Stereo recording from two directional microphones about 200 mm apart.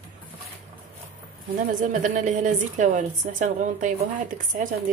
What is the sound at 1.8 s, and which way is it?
A woman's voice, 40° right (ahead or behind).